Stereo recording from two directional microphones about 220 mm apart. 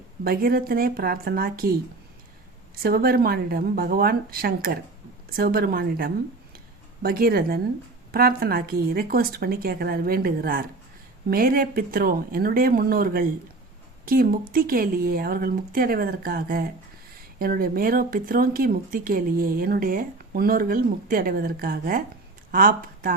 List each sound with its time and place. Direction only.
0.3 s speech: 45° right (ahead or behind)
2.7 s a woman's voice: 45° right (ahead or behind)